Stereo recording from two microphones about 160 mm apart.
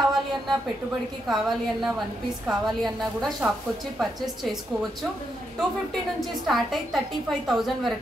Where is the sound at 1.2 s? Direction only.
Centre (ahead or behind).